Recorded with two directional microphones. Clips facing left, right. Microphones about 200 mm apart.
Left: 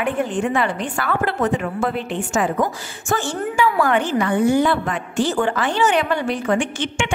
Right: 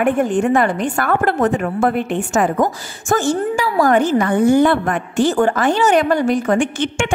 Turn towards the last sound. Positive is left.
turn(degrees=-45)  # may be behind; listen again after turning